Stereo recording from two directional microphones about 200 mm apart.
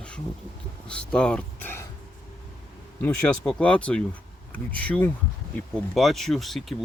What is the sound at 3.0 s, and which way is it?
Speech, 5° left (ahead or behind).